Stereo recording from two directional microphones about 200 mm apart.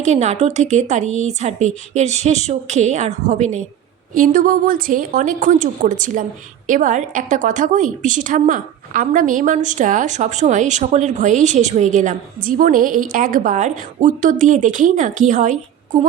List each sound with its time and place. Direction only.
0.0 s a woman's voice: 35° right (ahead or behind)